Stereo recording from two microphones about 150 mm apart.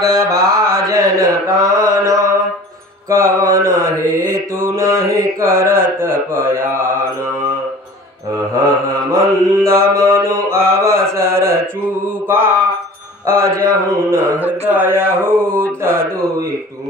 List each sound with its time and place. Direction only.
0.0 s mantra: 20° right (ahead or behind)
3.3 s mantra: 20° right (ahead or behind)
4.0 s mantra: 70° right (ahead or behind)
4.6 s mantra: 20° right (ahead or behind)
6.4 s speech: 15° right (ahead or behind)
8.6 s mantra: 20° right (ahead or behind)
11.1 s a sound: 20° right (ahead or behind)
12.3 s speech: 15° right (ahead or behind)
13.3 s mantra: 20° right (ahead or behind)
14.7 s speech: 15° right (ahead or behind)